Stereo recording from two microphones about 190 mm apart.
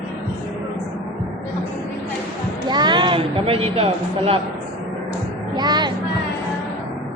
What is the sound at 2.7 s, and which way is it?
Speech, 25° right (ahead or behind).